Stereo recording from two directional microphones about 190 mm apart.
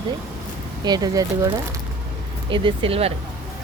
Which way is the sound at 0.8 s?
20° right (ahead or behind).